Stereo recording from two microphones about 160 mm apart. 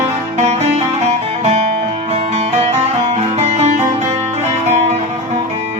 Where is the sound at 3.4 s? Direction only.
45° right (ahead or behind).